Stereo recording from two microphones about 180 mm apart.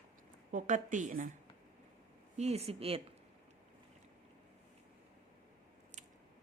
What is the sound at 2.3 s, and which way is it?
Speech, 35° right (ahead or behind).